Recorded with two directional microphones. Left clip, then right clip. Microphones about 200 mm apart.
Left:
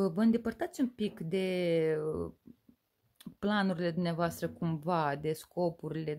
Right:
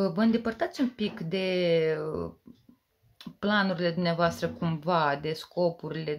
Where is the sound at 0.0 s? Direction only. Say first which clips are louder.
Right 4 dB; 45° left (ahead or behind).